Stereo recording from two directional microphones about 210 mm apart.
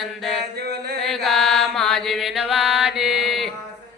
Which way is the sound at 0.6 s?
50° right (ahead or behind).